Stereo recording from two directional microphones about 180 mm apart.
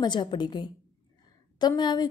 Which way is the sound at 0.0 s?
25° left (ahead or behind).